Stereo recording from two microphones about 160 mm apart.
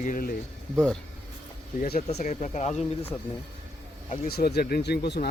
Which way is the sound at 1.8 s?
75° left (ahead or behind).